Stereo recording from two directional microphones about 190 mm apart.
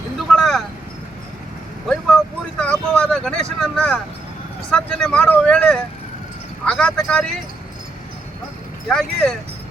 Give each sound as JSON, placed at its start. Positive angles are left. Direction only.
{"t": 0.3, "sound": "vehicle", "side_deg": 0}
{"t": 1.9, "sound": "vehicle", "side_deg": 5}
{"t": 4.7, "sound": "speech", "side_deg": 5}
{"t": 8.9, "sound": "speech", "side_deg": 5}